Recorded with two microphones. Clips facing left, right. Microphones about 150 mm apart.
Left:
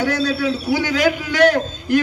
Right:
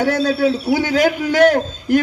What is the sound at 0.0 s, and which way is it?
A man's voice, 45° right (ahead or behind).